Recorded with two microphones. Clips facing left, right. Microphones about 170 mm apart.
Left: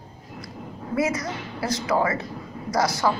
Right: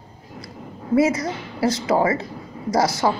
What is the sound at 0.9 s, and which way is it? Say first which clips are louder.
A woman's voice: right 6 dB; 30° right (ahead or behind).